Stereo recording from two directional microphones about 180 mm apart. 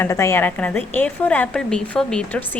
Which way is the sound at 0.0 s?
15° left (ahead or behind).